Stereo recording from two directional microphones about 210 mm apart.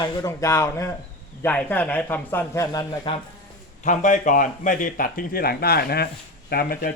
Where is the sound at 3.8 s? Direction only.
35° left (ahead or behind).